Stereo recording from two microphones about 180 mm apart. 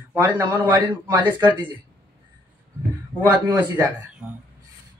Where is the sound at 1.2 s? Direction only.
25° right (ahead or behind).